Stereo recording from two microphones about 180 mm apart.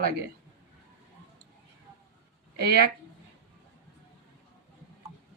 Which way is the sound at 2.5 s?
60° right (ahead or behind).